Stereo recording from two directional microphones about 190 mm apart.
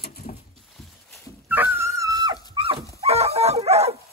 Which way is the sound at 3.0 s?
35° right (ahead or behind).